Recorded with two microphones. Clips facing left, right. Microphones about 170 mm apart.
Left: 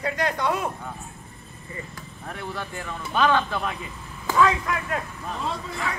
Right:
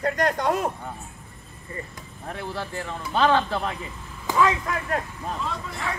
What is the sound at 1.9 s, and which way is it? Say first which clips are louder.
Speech: right 1 dB; 25° right (ahead or behind).